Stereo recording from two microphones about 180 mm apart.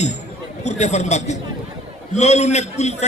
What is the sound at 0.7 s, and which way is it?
A man's voice, 40° left (ahead or behind).